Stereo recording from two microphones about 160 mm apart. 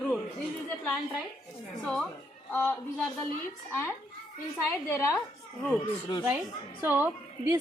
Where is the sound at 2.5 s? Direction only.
15° left (ahead or behind).